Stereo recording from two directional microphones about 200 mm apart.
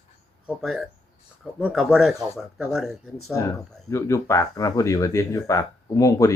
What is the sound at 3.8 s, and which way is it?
Speech, 15° left (ahead or behind).